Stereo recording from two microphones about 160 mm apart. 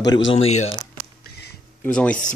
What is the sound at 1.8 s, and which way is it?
Speech, 10° left (ahead or behind).